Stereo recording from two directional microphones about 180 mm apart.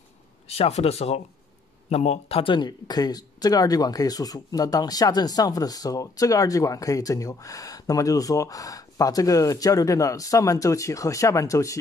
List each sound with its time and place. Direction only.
0.5 s speech: 35° left (ahead or behind); by 11.8 s 15° left (ahead or behind)